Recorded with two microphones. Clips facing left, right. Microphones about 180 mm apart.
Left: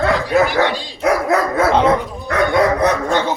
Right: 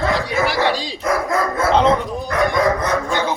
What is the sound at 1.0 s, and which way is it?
Dog, 70° left (ahead or behind).